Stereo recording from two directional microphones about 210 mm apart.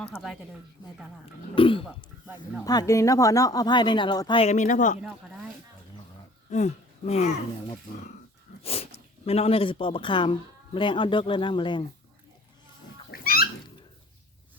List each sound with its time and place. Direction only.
1.2 s speech: 25° left (ahead or behind)
2.2 s speech: 5° right (ahead or behind)
2.6 s speech: 15° left (ahead or behind); by 4.9 s 35° left (ahead or behind)
6.5 s speech: 35° left (ahead or behind)
8.6 s speech: 30° left (ahead or behind)
13.1 s pig: 45° left (ahead or behind)